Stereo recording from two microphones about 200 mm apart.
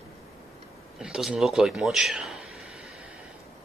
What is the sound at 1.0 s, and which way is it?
A man's voice, 5° right (ahead or behind).